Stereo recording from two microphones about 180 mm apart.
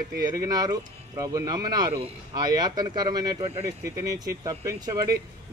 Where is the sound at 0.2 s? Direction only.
20° right (ahead or behind).